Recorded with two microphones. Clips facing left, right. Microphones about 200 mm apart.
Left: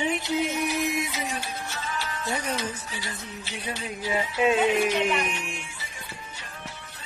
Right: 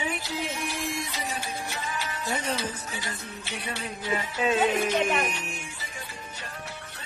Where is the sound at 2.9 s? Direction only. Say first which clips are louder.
Even; 50° right (ahead or behind).